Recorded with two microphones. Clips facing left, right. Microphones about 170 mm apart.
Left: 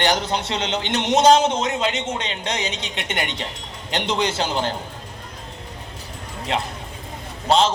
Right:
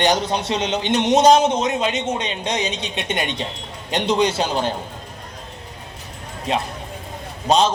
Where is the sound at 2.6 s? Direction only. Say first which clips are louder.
Right 3 dB; 25° left (ahead or behind).